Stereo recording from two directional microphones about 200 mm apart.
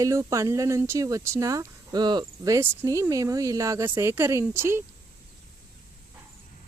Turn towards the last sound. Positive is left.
turn(degrees=-10)  # may be behind; listen again after turning